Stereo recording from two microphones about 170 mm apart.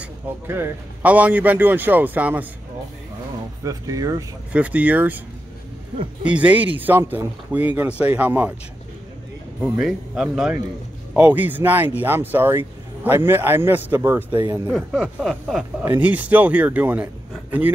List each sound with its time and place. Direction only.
0.0 s speech: 15° right (ahead or behind)
3.6 s speech: 20° right (ahead or behind)
4.5 s speech: 10° right (ahead or behind)
6.2 s speech: 10° right (ahead or behind)
9.6 s speech: 5° right (ahead or behind)